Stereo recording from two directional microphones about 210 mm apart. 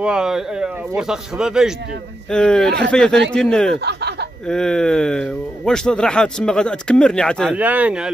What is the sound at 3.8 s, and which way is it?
Speech, 55° right (ahead or behind).